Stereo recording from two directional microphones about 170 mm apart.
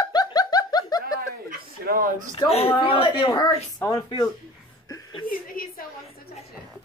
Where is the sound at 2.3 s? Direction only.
35° left (ahead or behind).